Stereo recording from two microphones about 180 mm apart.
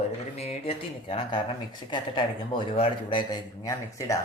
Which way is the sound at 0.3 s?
35° left (ahead or behind).